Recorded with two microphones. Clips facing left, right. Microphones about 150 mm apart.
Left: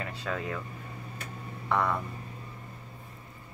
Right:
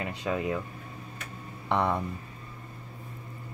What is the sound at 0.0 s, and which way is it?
Speech, 15° right (ahead or behind).